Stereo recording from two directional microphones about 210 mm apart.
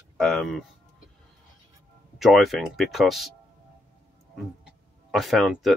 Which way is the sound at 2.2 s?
Centre (ahead or behind).